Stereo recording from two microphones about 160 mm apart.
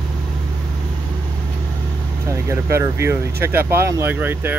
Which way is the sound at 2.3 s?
20° right (ahead or behind).